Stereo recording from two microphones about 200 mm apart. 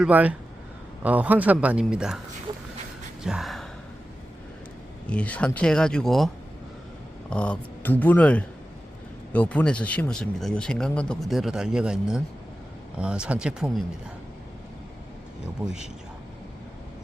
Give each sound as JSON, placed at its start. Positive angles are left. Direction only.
{"t": 0.0, "sound": "a man's voice", "side_deg": -5}
{"t": 3.2, "sound": "gasp", "side_deg": 0}
{"t": 5.0, "sound": "speech", "side_deg": 5}
{"t": 15.6, "sound": "speech", "side_deg": -5}